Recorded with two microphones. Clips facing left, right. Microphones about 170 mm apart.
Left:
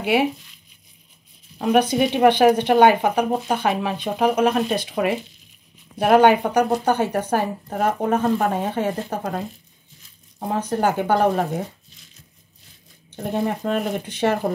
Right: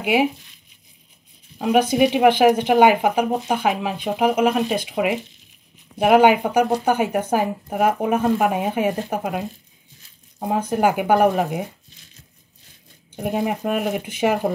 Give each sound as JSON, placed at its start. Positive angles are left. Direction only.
{"t": 0.0, "sound": "speech", "side_deg": -15}
{"t": 1.7, "sound": "speech", "side_deg": -10}
{"t": 10.5, "sound": "speech", "side_deg": -10}
{"t": 13.1, "sound": "speech", "side_deg": -10}